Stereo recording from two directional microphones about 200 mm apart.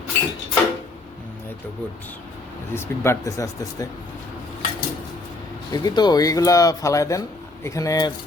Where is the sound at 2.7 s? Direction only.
10° left (ahead or behind).